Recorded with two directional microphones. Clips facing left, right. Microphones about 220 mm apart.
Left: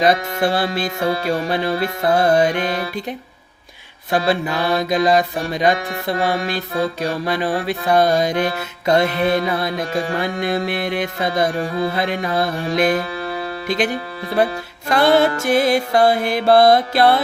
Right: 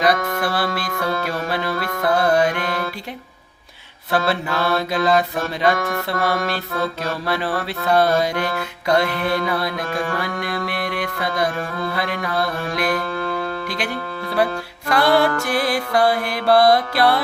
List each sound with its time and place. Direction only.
0.0 s music: 25° left (ahead or behind)
4.1 s mantra: 15° left (ahead or behind)
6.1 s music: 15° left (ahead or behind)